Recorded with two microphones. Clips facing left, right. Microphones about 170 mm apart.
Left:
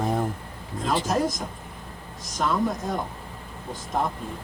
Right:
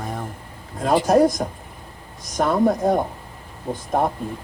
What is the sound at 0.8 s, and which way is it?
Speech, 55° right (ahead or behind).